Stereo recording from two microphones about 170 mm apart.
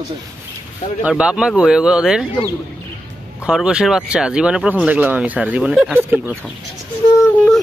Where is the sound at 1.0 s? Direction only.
5° right (ahead or behind).